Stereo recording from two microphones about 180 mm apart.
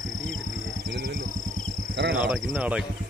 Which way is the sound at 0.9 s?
65° right (ahead or behind).